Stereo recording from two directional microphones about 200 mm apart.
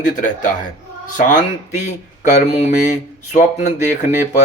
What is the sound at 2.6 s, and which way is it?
Speech, 35° left (ahead or behind).